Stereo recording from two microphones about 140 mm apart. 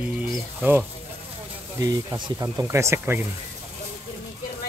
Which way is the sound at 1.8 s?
25° right (ahead or behind).